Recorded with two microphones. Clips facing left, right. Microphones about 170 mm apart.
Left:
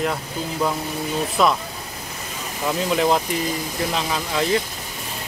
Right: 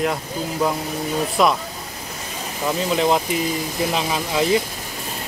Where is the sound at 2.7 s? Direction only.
Centre (ahead or behind).